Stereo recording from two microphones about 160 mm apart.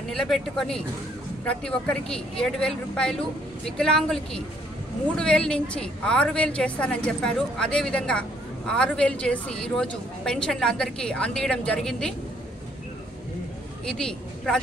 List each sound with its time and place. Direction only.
0.1 s a woman's voice: 5° left (ahead or behind)
13.8 s speech: 5° left (ahead or behind)